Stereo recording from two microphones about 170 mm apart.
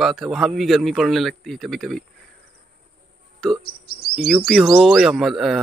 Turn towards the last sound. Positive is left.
turn(degrees=0)  # may be behind; listen again after turning